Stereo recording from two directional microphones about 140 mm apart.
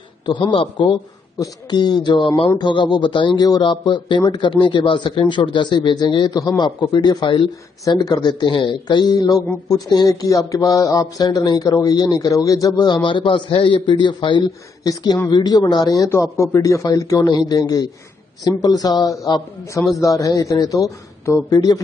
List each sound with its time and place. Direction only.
0.3 s a man's voice: 35° left (ahead or behind)